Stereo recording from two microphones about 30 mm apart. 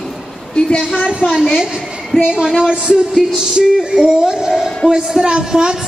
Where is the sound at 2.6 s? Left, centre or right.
Right.